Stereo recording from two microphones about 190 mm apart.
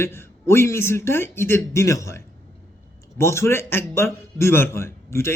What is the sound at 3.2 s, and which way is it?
A man's voice, 15° left (ahead or behind).